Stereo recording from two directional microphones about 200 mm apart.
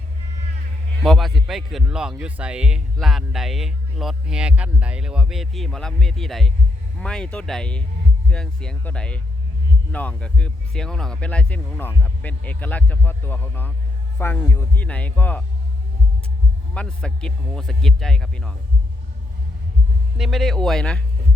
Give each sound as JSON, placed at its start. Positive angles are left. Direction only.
{"t": 1.0, "sound": "speech", "side_deg": 0}
{"t": 16.7, "sound": "speech", "side_deg": 5}
{"t": 20.1, "sound": "speech", "side_deg": 0}